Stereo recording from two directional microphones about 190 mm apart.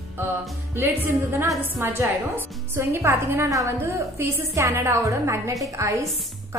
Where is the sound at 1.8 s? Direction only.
10° right (ahead or behind).